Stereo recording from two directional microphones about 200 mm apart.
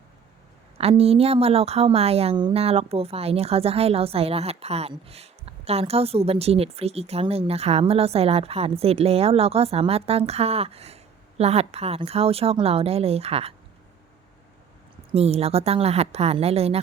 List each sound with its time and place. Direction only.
0.8 s a woman's voice: 30° right (ahead or behind)
15.1 s a woman's voice: 30° right (ahead or behind)